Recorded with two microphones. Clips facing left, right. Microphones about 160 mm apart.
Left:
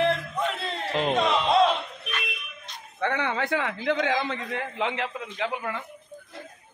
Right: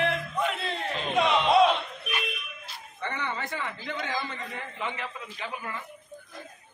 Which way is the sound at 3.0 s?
70° left (ahead or behind).